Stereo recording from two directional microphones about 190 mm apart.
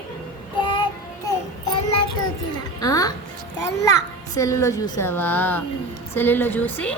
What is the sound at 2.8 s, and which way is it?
Music, 20° left (ahead or behind).